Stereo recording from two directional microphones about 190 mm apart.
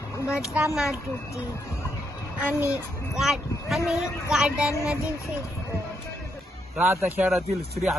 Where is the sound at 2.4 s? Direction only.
10° right (ahead or behind).